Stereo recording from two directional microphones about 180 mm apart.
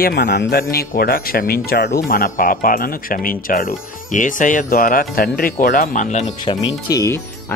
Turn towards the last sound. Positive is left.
turn(degrees=20)  # may be behind; listen again after turning